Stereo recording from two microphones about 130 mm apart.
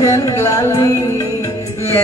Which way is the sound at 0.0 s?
25° left (ahead or behind).